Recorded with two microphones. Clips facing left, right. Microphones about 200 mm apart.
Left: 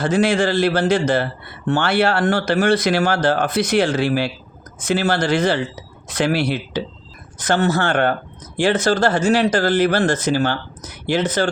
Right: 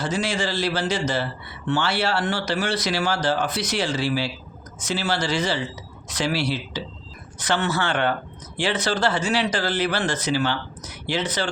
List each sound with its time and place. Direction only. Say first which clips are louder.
0.0 s a man's voice: left 8 dB; 55° left (ahead or behind)